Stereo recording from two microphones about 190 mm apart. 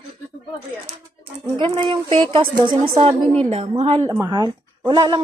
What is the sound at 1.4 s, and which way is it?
A woman's voice, 25° right (ahead or behind).